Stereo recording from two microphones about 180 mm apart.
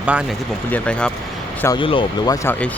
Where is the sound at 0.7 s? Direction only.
5° left (ahead or behind).